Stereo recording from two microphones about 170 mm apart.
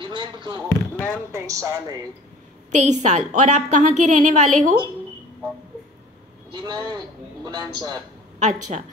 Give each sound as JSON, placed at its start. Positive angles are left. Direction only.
{"t": 0.0, "sound": "basketball bounce", "side_deg": -30}
{"t": 0.7, "sound": "speech", "side_deg": 10}
{"t": 1.3, "sound": "a man's voice", "side_deg": -20}
{"t": 2.7, "sound": "a woman's voice", "side_deg": -45}
{"t": 6.5, "sound": "a man's voice", "side_deg": -25}
{"t": 8.4, "sound": "a woman's voice", "side_deg": -45}